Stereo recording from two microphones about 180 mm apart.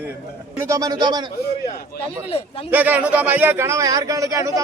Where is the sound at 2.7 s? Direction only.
10° right (ahead or behind).